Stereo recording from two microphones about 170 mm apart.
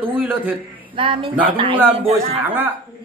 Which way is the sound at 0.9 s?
30° right (ahead or behind).